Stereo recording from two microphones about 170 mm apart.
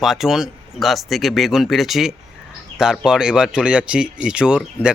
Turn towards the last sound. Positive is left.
turn(degrees=-5)  # may be behind; listen again after turning